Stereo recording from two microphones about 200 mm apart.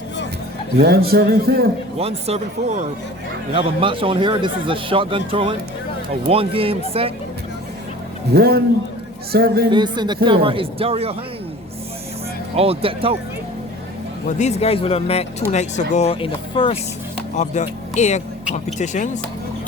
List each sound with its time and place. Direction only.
0.8 s a man's voice: 50° right (ahead or behind)
2.0 s a man's voice: 30° right (ahead or behind)
8.3 s a man's voice: 50° right (ahead or behind)
9.6 s a man's voice: 20° right (ahead or behind)
12.5 s a man's voice: 30° right (ahead or behind)
14.3 s speech: 35° left (ahead or behind)
17.3 s speech: 35° left (ahead or behind)